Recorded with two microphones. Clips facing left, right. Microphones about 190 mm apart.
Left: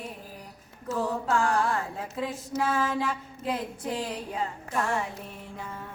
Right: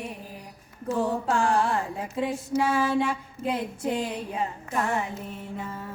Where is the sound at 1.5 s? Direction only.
15° right (ahead or behind).